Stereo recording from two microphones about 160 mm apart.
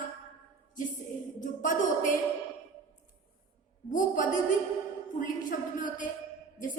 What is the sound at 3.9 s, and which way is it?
A woman's voice, 55° left (ahead or behind).